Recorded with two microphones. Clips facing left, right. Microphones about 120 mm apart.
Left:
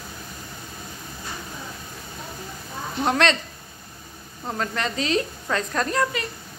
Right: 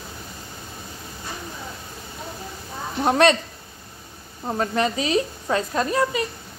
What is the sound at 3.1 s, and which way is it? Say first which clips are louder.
Speech: right 4 dB; 15° right (ahead or behind).